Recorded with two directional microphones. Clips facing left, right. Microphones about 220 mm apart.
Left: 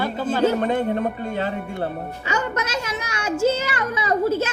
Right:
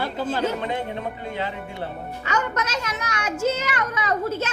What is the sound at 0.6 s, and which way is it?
Speech, 50° left (ahead or behind).